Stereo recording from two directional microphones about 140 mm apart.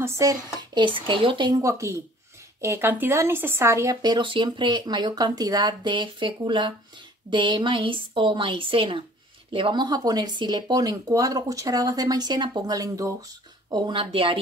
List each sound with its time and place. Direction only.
0.0 s speech: 25° right (ahead or behind)
0.7 s a woman's voice: 35° right (ahead or behind)
1.6 s a woman's voice: 20° right (ahead or behind); by 14.4 s 40° right (ahead or behind)